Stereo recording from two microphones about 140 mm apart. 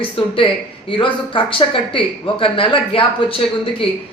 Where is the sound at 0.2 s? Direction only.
40° left (ahead or behind).